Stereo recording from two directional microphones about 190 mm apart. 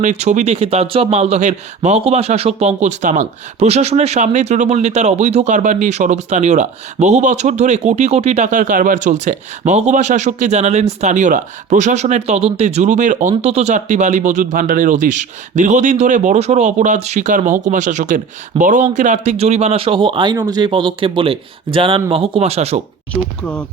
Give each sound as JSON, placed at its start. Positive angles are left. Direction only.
{"t": 0.0, "sound": "speech", "side_deg": -40}